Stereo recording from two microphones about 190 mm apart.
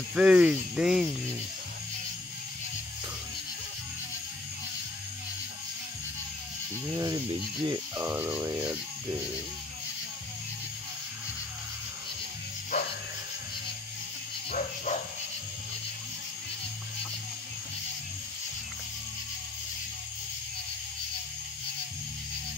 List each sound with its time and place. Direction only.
0.1 s speech: 5° right (ahead or behind)
6.9 s cricket: 20° right (ahead or behind)
14.9 s insect: 40° left (ahead or behind)